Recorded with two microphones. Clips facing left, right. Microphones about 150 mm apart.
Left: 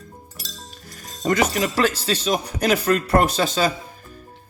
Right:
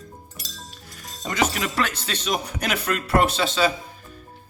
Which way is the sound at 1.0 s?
50° left (ahead or behind).